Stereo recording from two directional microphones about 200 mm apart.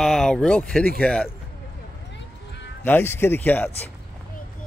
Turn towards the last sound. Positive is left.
turn(degrees=10)  # may be behind; listen again after turning